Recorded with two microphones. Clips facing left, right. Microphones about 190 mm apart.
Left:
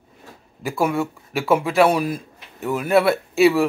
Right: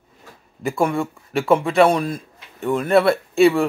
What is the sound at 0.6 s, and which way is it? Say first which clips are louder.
Speech: right 1 dB; centre (ahead or behind).